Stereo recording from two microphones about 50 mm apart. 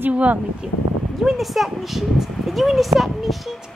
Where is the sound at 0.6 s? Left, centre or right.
Centre.